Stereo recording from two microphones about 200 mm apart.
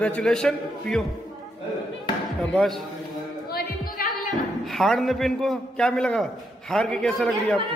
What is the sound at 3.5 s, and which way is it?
Music, 50° left (ahead or behind).